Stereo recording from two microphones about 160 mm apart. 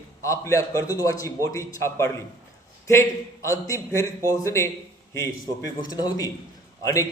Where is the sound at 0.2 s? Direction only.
20° left (ahead or behind).